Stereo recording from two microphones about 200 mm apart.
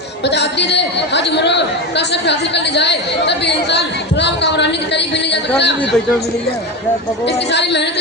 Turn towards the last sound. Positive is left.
turn(degrees=60)  # may be behind; listen again after turning